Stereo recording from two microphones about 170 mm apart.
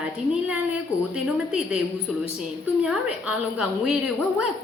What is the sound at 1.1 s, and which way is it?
Speech, 5° right (ahead or behind).